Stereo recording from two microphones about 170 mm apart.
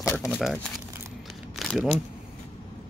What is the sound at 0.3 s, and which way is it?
Speech, centre (ahead or behind).